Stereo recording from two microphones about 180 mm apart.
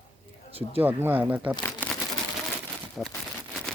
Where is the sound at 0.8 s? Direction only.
10° right (ahead or behind).